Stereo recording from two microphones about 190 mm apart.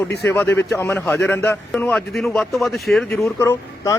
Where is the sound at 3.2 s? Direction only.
15° left (ahead or behind).